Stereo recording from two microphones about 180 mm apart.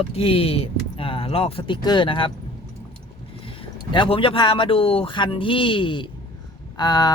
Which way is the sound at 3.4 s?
30° left (ahead or behind).